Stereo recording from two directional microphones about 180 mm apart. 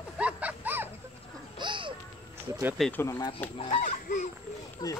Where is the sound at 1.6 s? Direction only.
25° right (ahead or behind).